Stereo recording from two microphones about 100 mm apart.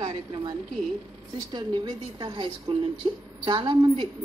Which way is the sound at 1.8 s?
55° right (ahead or behind).